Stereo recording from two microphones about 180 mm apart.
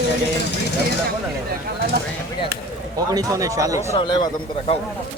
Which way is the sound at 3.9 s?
25° left (ahead or behind).